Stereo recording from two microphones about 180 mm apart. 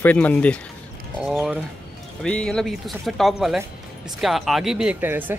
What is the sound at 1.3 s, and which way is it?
Speech, 5° right (ahead or behind).